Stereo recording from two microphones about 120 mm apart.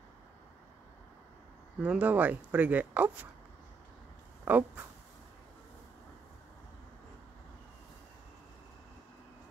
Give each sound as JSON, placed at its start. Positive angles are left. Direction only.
{"t": 1.8, "sound": "speech", "side_deg": -10}
{"t": 4.5, "sound": "speech", "side_deg": -15}